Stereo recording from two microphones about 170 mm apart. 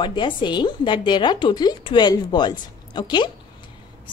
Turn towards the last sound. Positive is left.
turn(degrees=25)  # may be behind; listen again after turning